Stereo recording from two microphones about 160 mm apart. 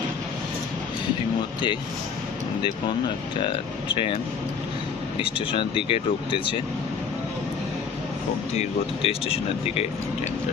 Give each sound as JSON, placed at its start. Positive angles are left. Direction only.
{"t": 3.9, "sound": "speech", "side_deg": 35}
{"t": 5.2, "sound": "speech", "side_deg": 35}
{"t": 8.5, "sound": "speech", "side_deg": 40}